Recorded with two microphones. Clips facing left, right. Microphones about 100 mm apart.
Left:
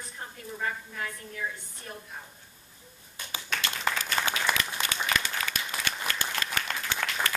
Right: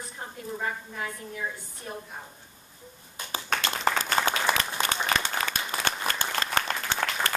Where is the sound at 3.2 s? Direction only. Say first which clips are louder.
Right 5 dB; 30° right (ahead or behind).